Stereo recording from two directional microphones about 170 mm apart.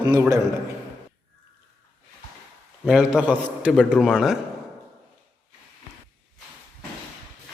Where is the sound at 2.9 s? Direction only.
5° right (ahead or behind).